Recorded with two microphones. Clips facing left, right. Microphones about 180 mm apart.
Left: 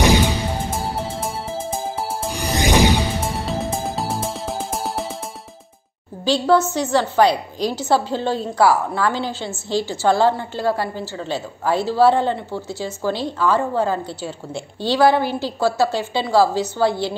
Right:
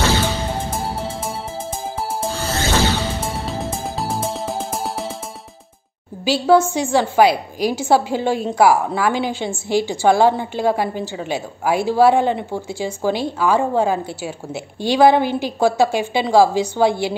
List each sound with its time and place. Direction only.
0.0 s music: 15° left (ahead or behind)
1.2 s music: centre (ahead or behind)
2.3 s music: 15° left (ahead or behind)
3.3 s music: centre (ahead or behind)
6.2 s a woman's voice: 10° right (ahead or behind)